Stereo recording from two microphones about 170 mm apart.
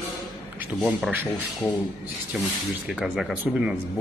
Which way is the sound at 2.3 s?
Centre (ahead or behind).